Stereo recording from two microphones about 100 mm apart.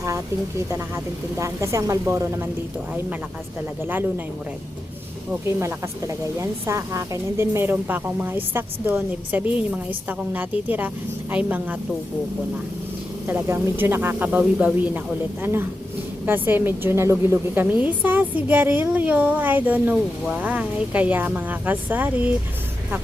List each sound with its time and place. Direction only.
1.4 s speech: 30° right (ahead or behind)
5.5 s a woman's voice: 30° right (ahead or behind)
13.2 s a woman's voice: 20° right (ahead or behind)